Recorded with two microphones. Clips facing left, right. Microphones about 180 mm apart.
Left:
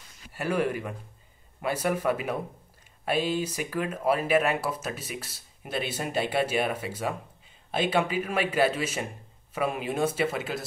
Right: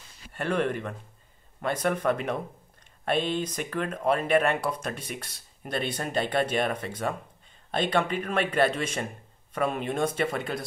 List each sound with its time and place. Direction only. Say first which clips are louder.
0.3 s speech: even; 10° left (ahead or behind)